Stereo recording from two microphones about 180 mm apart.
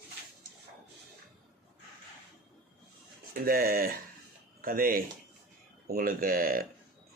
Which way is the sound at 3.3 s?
55° right (ahead or behind).